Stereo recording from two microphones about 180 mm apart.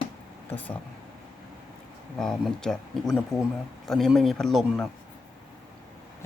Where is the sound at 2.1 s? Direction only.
Centre (ahead or behind).